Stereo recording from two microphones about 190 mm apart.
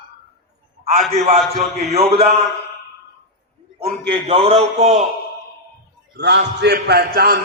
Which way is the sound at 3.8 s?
30° right (ahead or behind).